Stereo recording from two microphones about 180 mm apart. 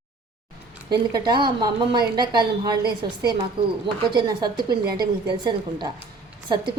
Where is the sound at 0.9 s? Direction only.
25° right (ahead or behind).